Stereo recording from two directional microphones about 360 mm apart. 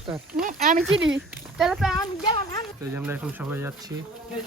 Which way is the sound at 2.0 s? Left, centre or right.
Centre.